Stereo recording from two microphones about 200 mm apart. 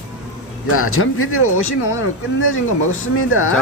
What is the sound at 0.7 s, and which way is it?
Speech, 90° left.